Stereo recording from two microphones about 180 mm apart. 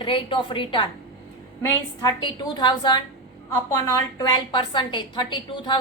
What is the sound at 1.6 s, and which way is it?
A woman's voice, 15° left (ahead or behind).